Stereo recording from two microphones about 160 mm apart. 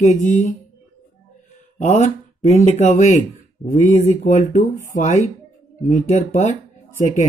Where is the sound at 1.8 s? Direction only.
45° left (ahead or behind).